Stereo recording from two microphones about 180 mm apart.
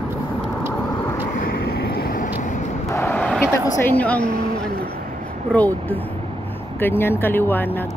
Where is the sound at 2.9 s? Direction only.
10° left (ahead or behind).